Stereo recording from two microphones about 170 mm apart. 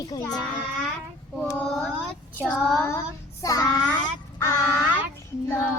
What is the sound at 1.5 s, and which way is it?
Child singing, 5° left (ahead or behind).